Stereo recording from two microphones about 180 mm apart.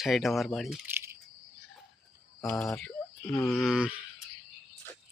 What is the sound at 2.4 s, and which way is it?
Speech, 15° left (ahead or behind).